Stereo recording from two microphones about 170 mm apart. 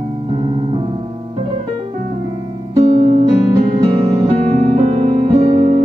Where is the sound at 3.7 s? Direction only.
30° right (ahead or behind).